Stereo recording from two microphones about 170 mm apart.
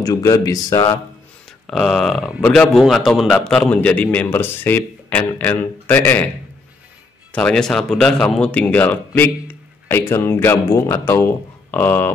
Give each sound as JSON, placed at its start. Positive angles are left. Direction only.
{"t": 0.0, "sound": "speech", "side_deg": 20}
{"t": 1.7, "sound": "speech", "side_deg": 0}
{"t": 7.3, "sound": "speech", "side_deg": 5}